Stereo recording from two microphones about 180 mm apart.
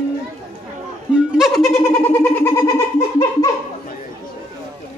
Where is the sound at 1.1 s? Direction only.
5° right (ahead or behind).